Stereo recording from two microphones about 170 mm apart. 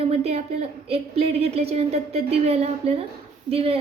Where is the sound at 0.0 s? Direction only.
40° right (ahead or behind).